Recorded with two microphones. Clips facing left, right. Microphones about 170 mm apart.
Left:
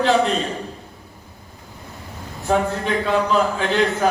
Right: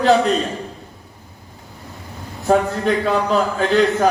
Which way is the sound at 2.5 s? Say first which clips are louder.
Right 4 dB; 45° right (ahead or behind).